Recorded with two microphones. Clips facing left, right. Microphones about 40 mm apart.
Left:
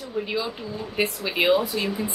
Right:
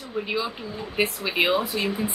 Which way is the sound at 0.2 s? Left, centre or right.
Centre.